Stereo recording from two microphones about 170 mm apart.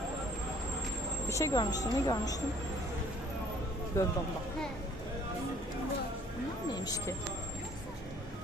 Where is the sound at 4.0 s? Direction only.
20° left (ahead or behind).